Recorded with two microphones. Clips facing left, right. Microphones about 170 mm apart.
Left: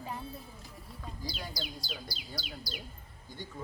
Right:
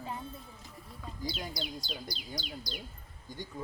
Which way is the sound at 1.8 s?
5° left (ahead or behind).